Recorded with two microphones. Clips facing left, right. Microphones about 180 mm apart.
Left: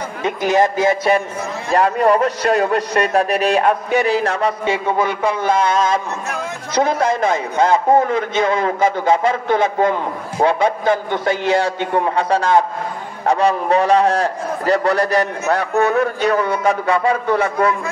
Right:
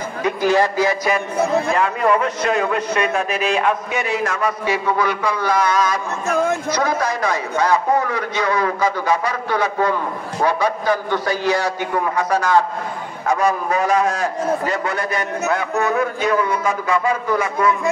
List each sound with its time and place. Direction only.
0.2 s a man's voice: 20° left (ahead or behind)